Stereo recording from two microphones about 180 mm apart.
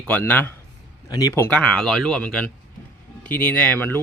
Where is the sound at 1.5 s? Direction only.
5° left (ahead or behind).